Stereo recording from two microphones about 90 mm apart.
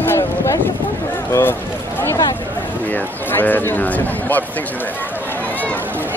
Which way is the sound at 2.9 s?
20° left (ahead or behind).